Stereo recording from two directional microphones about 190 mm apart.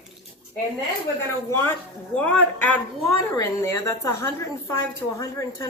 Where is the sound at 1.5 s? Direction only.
15° left (ahead or behind).